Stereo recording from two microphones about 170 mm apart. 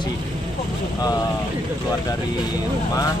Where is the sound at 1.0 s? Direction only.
25° left (ahead or behind).